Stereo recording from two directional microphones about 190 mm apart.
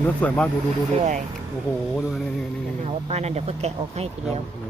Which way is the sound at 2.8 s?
35° right (ahead or behind).